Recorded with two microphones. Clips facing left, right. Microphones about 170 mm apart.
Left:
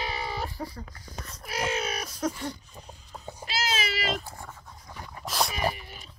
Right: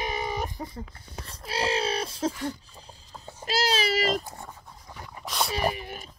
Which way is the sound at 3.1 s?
15° left (ahead or behind).